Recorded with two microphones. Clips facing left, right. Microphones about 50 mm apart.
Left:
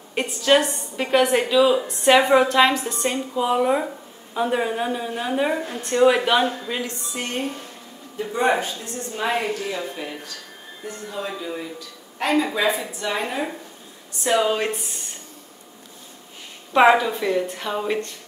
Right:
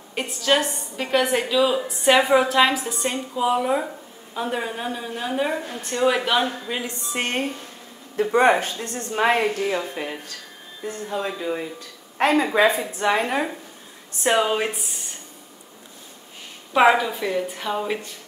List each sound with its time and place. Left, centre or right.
0.1 s a woman's voice: centre
6.6 s speech: centre
7.1 s a woman's voice: right
8.2 s a woman's voice: right
9.3 s speech: right
9.8 s speech: right
12.2 s a woman's voice: right
14.4 s speech: centre
16.7 s a woman's voice: centre